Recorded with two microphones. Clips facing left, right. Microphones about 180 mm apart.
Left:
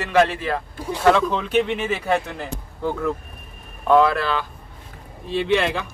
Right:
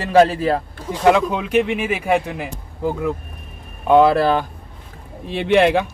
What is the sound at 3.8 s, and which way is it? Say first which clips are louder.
Speech: right 3 dB; 25° right (ahead or behind).